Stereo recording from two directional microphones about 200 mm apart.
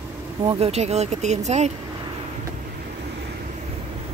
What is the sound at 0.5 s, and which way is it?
Speech, 30° right (ahead or behind).